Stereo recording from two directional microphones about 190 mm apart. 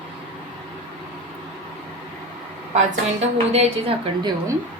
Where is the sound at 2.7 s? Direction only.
35° right (ahead or behind).